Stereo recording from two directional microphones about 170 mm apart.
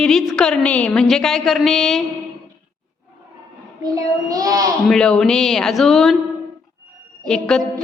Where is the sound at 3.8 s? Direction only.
20° right (ahead or behind).